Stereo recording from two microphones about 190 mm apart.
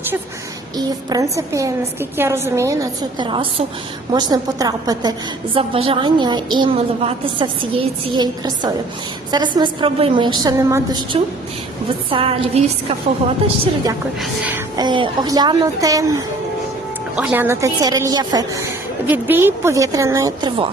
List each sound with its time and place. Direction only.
0.8 s a woman's voice: 20° right (ahead or behind)
3.2 s a woman's voice: 25° right (ahead or behind)
12.1 s a woman's voice: 30° right (ahead or behind)
14.2 s a woman's voice: 10° right (ahead or behind)
14.8 s a woman's voice: 25° right (ahead or behind)